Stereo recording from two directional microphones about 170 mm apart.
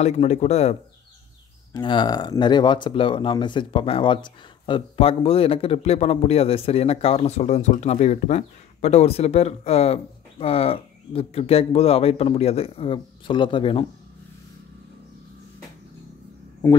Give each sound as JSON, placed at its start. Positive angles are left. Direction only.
{"t": 0.0, "sound": "speech", "side_deg": 40}
{"t": 1.7, "sound": "speech", "side_deg": 25}